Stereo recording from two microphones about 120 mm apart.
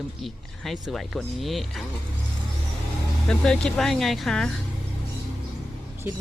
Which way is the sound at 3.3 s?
5° left (ahead or behind).